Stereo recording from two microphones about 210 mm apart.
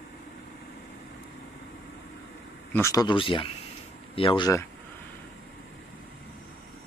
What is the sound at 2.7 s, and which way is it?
Speech, 15° left (ahead or behind).